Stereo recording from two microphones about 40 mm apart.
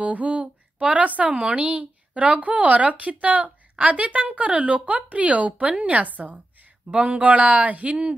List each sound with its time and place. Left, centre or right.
0.0 s speech: right